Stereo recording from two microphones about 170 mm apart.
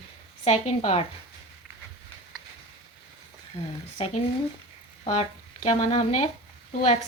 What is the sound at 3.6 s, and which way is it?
Speech, 30° left (ahead or behind).